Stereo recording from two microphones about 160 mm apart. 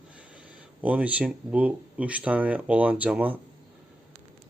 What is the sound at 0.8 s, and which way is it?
Speech, 10° right (ahead or behind).